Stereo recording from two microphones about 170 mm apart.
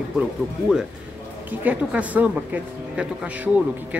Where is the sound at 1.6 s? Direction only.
10° right (ahead or behind).